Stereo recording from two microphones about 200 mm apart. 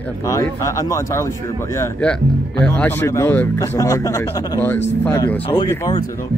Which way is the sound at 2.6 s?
10° left (ahead or behind).